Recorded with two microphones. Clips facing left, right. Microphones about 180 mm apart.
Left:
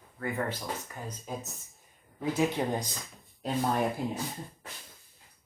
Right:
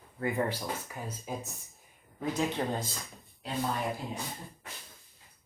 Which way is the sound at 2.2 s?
10° left (ahead or behind).